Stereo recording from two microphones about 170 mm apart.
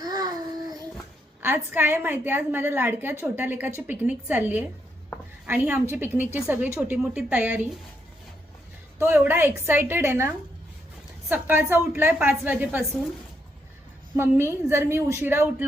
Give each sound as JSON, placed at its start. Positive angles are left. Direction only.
{"t": 0.0, "sound": "a sound", "side_deg": -25}
{"t": 1.4, "sound": "a woman's voice", "side_deg": -15}
{"t": 9.0, "sound": "a woman's voice", "side_deg": -15}
{"t": 14.2, "sound": "a woman's voice", "side_deg": -15}